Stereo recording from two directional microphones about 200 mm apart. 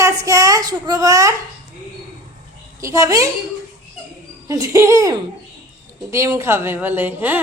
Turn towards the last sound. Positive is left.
turn(degrees=-10)  # may be behind; listen again after turning